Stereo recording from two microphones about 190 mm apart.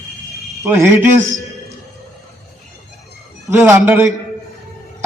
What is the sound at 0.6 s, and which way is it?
Speech, 15° right (ahead or behind).